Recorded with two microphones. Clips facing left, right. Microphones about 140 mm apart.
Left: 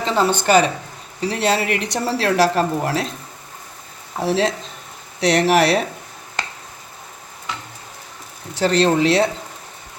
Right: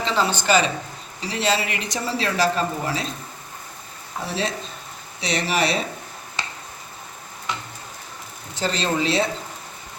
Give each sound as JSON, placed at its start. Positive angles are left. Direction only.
{"t": 0.0, "sound": "speech", "side_deg": 50}
{"t": 4.2, "sound": "speech", "side_deg": 85}
{"t": 5.2, "sound": "speech", "side_deg": 75}
{"t": 8.5, "sound": "speech", "side_deg": 65}